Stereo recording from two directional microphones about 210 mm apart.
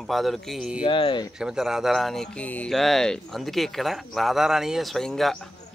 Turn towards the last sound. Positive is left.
turn(degrees=0)  # may be behind; listen again after turning